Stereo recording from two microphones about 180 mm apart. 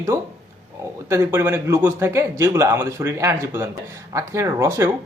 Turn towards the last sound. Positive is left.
turn(degrees=-15)  # may be behind; listen again after turning